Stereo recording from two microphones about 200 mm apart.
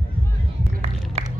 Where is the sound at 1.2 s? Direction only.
30° right (ahead or behind).